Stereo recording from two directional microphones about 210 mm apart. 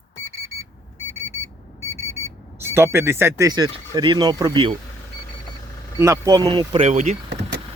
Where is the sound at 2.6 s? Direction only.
10° right (ahead or behind).